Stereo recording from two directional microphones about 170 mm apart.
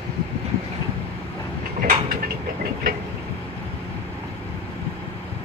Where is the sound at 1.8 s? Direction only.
55° right (ahead or behind).